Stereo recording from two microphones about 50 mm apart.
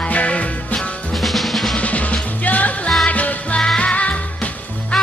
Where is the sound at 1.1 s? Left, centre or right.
Centre.